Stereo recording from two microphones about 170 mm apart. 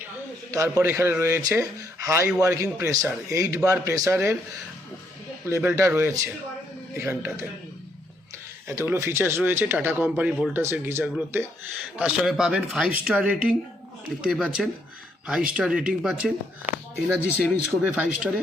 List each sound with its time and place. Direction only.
0.5 s speech: 15° right (ahead or behind)
5.5 s speech: 15° right (ahead or behind)
8.6 s speech: 15° right (ahead or behind)
17.7 s speech: 10° right (ahead or behind)